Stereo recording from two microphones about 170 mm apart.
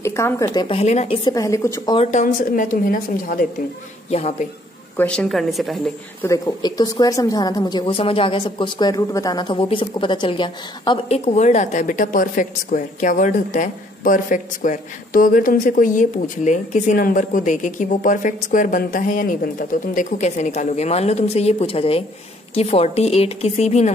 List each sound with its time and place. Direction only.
0.0 s speech: 15° left (ahead or behind)
0.7 s a woman's voice: 40° left (ahead or behind)
1.2 s a woman's voice: 20° left (ahead or behind)
2.0 s a woman's voice: 45° left (ahead or behind)
4.1 s a woman's voice: 40° left (ahead or behind)
4.9 s a woman's voice: 5° left (ahead or behind)
6.2 s a woman's voice: 20° left (ahead or behind); by 23.9 s 40° left (ahead or behind)